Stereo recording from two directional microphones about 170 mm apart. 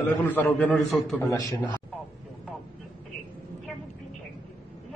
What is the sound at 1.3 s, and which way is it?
Speech, 20° left (ahead or behind).